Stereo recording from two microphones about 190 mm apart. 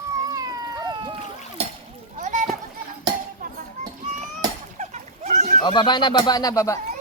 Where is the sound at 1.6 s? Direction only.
35° right (ahead or behind).